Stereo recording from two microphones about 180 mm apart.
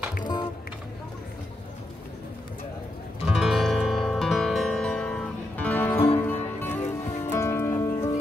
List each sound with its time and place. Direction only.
0.2 s music: 25° left (ahead or behind)
3.3 s music: centre (ahead or behind); by 8.1 s 15° left (ahead or behind)